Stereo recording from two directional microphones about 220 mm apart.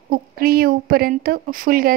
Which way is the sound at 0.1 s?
40° right (ahead or behind).